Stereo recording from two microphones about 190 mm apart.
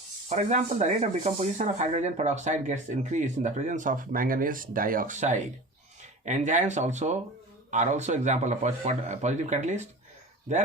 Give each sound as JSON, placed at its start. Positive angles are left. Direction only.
{"t": 0.3, "sound": "speech", "side_deg": -40}